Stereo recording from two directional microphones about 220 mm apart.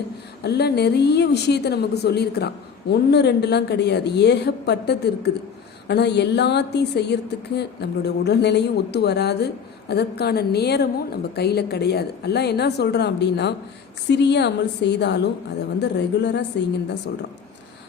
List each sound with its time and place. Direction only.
0.4 s a woman's voice: 50° left (ahead or behind)